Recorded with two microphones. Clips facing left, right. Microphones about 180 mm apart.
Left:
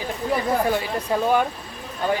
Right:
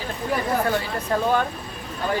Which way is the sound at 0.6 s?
15° left (ahead or behind).